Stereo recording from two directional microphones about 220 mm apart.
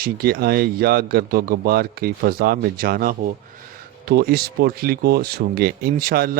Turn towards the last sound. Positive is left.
turn(degrees=-40)  # may be behind; listen again after turning